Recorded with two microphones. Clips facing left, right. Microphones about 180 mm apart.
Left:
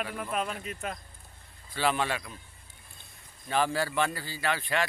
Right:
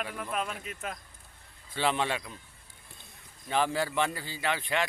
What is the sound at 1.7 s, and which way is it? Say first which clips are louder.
Speech: even; 25° right (ahead or behind).